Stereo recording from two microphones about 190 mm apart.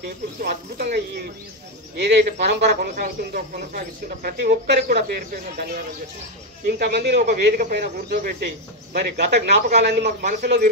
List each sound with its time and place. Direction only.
0.4 s speech: 60° right (ahead or behind)